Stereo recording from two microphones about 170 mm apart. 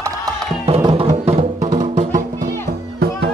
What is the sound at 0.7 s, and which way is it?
Music, 35° right (ahead or behind).